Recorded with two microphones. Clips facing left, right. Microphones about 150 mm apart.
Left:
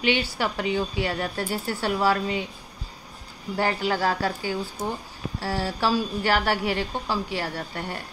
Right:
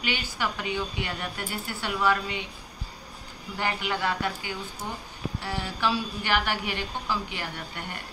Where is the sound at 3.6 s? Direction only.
35° left (ahead or behind).